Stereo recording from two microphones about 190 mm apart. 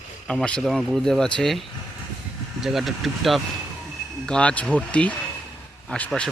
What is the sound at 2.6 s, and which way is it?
Speech, centre (ahead or behind).